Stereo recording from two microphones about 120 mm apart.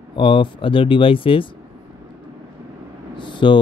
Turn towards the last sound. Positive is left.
turn(degrees=40)  # may be behind; listen again after turning